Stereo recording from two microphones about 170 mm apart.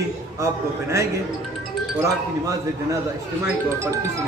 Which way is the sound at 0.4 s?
15° right (ahead or behind).